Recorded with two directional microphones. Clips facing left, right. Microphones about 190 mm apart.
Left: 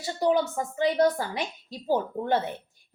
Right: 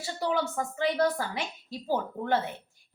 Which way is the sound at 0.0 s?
20° left (ahead or behind).